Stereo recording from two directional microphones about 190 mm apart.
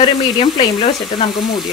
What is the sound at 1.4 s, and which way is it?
Frying, centre (ahead or behind).